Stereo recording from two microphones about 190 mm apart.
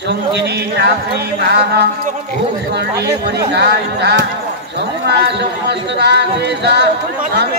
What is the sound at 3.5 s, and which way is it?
Speech, 60° right (ahead or behind).